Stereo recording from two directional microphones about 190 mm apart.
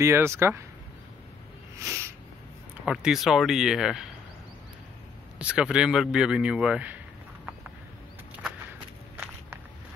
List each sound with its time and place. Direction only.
0.0 s speech: 15° right (ahead or behind)
1.8 s a sound: 15° right (ahead or behind)
2.8 s speech: 5° right (ahead or behind)
5.4 s speech: 5° right (ahead or behind)